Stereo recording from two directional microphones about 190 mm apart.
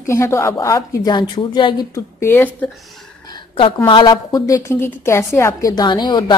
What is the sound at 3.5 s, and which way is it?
A woman's voice, 25° left (ahead or behind).